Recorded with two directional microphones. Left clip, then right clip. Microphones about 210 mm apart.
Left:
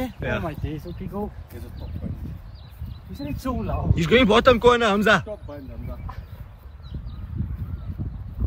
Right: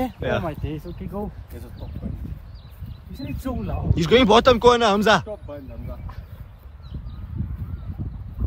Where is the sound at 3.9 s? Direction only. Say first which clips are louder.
Right 2 dB; 10° right (ahead or behind).